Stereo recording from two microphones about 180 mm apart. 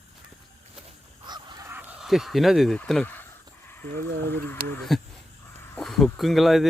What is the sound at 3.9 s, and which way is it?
Speech, 65° right (ahead or behind).